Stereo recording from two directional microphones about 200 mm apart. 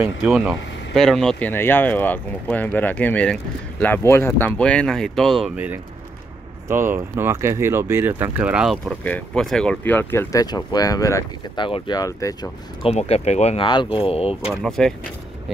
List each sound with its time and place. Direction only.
0.0 s speech: centre (ahead or behind); by 12.4 s 15° left (ahead or behind)
12.8 s speech: 30° left (ahead or behind)
14.5 s speech: centre (ahead or behind)